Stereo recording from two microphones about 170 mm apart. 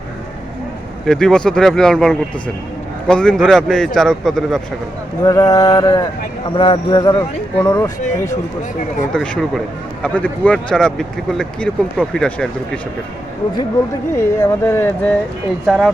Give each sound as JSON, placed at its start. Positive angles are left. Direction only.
{"t": 1.0, "sound": "speech", "side_deg": 5}
{"t": 5.2, "sound": "mantra", "side_deg": 20}
{"t": 7.2, "sound": "speech", "side_deg": 15}
{"t": 9.1, "sound": "speech", "side_deg": 5}
{"t": 14.1, "sound": "speech", "side_deg": 15}
{"t": 15.6, "sound": "speech", "side_deg": 0}